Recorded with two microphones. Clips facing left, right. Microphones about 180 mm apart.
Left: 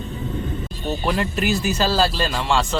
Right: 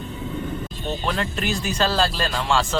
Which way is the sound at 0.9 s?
10° left (ahead or behind).